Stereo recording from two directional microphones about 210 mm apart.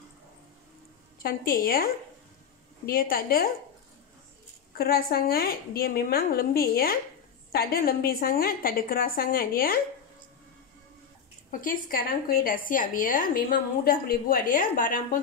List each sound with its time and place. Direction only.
1.2 s a woman's voice: 45° left (ahead or behind)
2.9 s a woman's voice: 45° left (ahead or behind)
4.7 s a woman's voice: 45° left (ahead or behind)
11.6 s a woman's voice: 45° left (ahead or behind)